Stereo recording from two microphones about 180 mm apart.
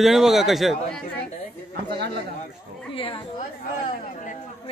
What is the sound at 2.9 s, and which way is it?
Speech, 30° left (ahead or behind).